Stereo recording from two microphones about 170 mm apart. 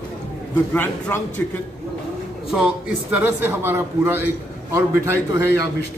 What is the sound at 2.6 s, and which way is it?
A man's voice, 10° right (ahead or behind).